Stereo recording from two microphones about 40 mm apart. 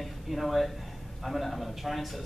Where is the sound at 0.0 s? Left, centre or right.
Centre.